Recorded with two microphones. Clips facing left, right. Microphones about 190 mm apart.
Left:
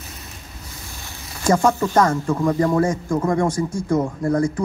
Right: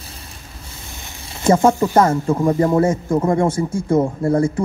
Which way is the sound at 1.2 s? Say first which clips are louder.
Right 4 dB; 25° right (ahead or behind).